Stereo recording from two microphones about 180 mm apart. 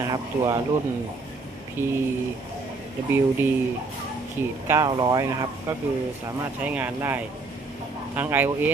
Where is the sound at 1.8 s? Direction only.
15° right (ahead or behind).